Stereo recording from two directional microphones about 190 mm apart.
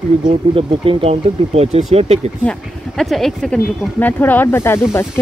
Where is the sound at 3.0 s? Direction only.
Centre (ahead or behind).